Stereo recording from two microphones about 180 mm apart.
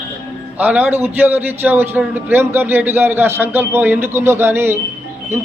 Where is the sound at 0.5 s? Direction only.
10° right (ahead or behind).